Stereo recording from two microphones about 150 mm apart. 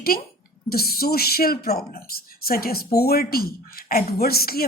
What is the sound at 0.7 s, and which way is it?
A woman's voice, 90° left.